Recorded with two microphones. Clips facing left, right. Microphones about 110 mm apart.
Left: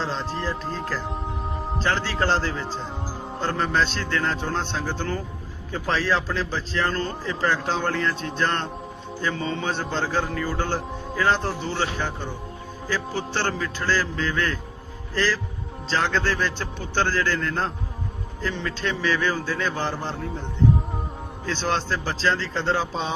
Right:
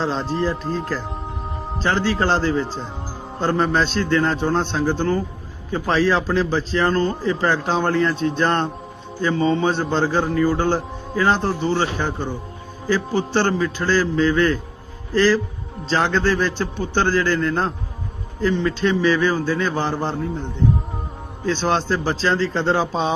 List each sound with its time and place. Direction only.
0.5 s speech: 5° right (ahead or behind)
1.8 s a man's voice: 15° right (ahead or behind)
3.4 s a man's voice: 20° right (ahead or behind)
8.4 s a man's voice: 20° right (ahead or behind); by 10.6 s 5° right (ahead or behind)
11.2 s a man's voice: 20° right (ahead or behind)
15.1 s a man's voice: 10° right (ahead or behind)
20.1 s speech: centre (ahead or behind)
21.4 s a man's voice: 15° right (ahead or behind)